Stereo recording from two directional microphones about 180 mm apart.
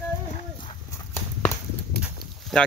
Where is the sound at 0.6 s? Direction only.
25° left (ahead or behind).